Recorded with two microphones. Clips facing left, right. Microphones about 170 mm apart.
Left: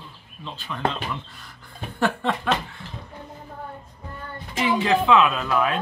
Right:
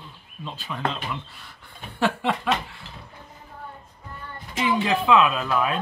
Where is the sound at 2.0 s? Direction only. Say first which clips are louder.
Even; 10° right (ahead or behind).